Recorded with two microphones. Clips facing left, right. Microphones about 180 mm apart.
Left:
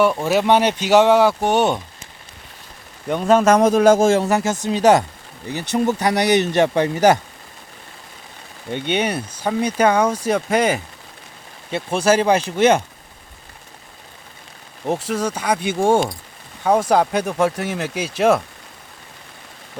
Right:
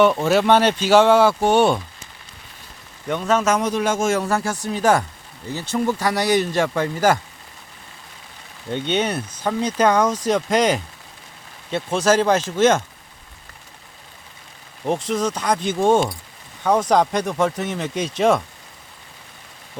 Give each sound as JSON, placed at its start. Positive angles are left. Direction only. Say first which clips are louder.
{"t": 0.0, "sound": "speech", "louder": "right 1 dB", "side_deg": 10}
{"t": 3.4, "sound": "a man's voice", "louder": "left 7 dB", "side_deg": 40}
{"t": 8.7, "sound": "speech", "louder": "left 1 dB", "side_deg": 10}
{"t": 14.8, "sound": "speech", "louder": "even", "side_deg": 10}